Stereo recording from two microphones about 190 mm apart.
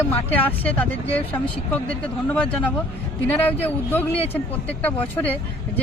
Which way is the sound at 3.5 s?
10° left (ahead or behind).